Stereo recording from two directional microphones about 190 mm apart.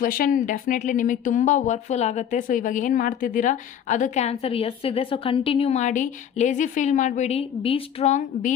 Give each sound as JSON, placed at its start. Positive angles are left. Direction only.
{"t": 0.0, "sound": "speech", "side_deg": 50}